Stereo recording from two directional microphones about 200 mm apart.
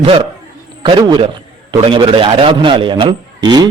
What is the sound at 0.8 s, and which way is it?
A man's voice, 25° right (ahead or behind).